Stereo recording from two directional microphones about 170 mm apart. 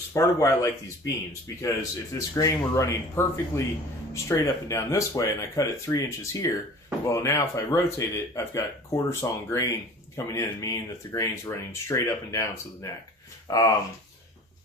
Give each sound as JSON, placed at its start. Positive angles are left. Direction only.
{"t": 0.1, "sound": "speech", "side_deg": 20}